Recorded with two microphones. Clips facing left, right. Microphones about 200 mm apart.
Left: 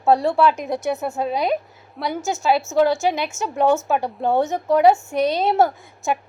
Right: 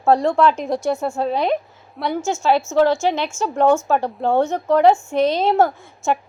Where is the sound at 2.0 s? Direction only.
Centre (ahead or behind).